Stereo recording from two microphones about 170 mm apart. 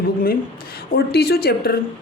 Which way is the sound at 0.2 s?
60° left (ahead or behind).